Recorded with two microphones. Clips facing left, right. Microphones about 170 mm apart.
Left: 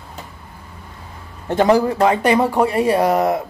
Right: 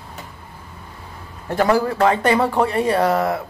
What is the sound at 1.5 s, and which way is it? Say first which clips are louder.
Speech: left 3 dB; 20° left (ahead or behind).